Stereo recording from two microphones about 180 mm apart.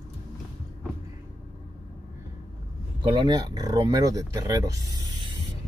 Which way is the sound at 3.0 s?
25° right (ahead or behind).